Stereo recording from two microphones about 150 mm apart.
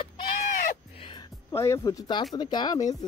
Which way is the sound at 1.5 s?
20° left (ahead or behind).